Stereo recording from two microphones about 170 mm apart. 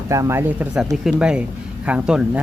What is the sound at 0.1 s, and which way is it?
Speech, 15° right (ahead or behind).